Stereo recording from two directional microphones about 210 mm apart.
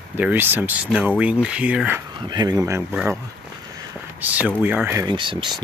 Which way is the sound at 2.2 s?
20° right (ahead or behind).